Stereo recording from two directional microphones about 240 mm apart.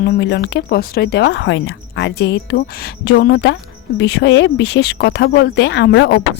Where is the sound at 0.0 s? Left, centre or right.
Left.